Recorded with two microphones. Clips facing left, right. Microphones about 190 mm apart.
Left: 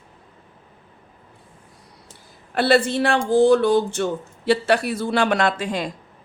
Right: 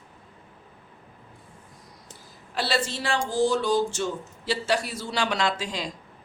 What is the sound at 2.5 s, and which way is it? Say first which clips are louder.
A man's voice: left 10 dB; 55° left (ahead or behind).